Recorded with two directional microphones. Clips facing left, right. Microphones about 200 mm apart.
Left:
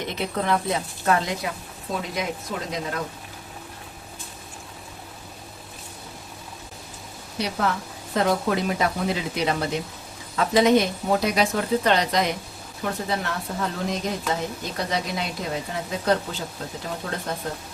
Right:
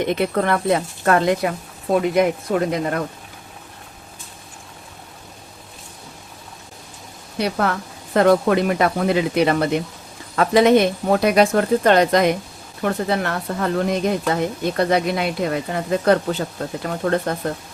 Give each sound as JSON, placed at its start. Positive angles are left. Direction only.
{"t": 0.1, "sound": "speech", "side_deg": -60}
{"t": 7.4, "sound": "speech", "side_deg": -60}